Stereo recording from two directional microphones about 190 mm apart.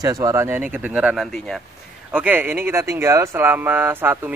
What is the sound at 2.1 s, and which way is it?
Speech, 10° right (ahead or behind).